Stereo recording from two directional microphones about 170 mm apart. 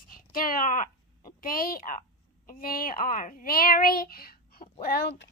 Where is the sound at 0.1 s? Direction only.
55° left (ahead or behind).